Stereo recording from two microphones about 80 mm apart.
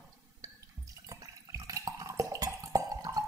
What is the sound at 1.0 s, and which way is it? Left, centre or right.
Water, right.